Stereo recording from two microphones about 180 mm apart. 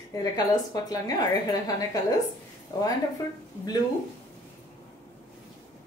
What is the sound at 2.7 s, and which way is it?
Speech, 20° left (ahead or behind).